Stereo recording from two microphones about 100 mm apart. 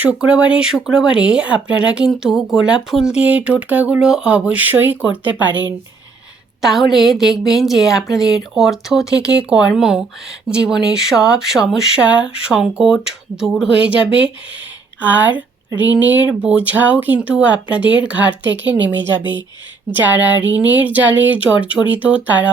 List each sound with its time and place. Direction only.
0.0 s speech: 10° right (ahead or behind)
6.6 s a woman's voice: 5° right (ahead or behind)
14.0 s speech: 60° left (ahead or behind)
15.0 s speech: 15° right (ahead or behind)